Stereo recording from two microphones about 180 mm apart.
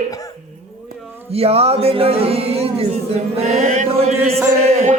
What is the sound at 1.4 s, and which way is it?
Music, 35° right (ahead or behind).